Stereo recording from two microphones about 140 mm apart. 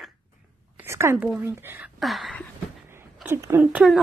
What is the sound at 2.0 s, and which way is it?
Speech, centre (ahead or behind).